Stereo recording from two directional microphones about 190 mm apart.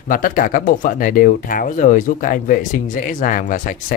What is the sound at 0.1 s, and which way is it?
Speech, 45° left (ahead or behind).